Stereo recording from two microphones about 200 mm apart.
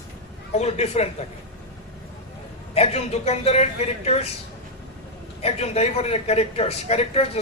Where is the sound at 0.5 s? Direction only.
35° left (ahead or behind).